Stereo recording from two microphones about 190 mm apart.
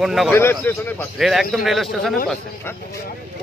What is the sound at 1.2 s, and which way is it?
Speech, centre (ahead or behind).